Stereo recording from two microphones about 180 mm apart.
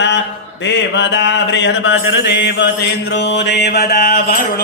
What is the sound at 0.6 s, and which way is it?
Mantra, 80° left.